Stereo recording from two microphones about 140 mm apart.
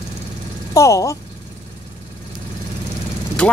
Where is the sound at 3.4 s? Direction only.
10° left (ahead or behind).